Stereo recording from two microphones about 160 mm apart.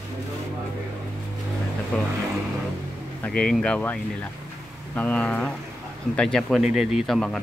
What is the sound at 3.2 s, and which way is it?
Speech, 5° left (ahead or behind).